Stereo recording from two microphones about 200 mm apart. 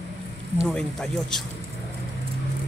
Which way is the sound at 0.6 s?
5° left (ahead or behind).